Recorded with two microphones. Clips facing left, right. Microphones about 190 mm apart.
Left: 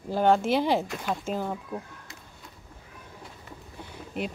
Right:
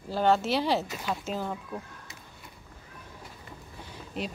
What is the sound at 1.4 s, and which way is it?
Speech, 15° left (ahead or behind).